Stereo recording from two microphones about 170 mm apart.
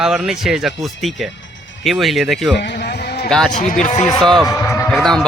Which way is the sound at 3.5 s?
50° left (ahead or behind).